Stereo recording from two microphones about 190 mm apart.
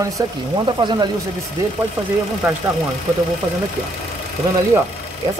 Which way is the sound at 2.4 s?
10° right (ahead or behind).